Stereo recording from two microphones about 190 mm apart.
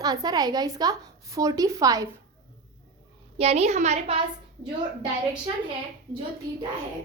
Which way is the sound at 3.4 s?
35° right (ahead or behind).